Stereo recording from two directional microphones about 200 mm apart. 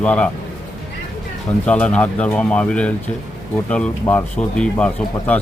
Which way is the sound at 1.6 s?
5° left (ahead or behind).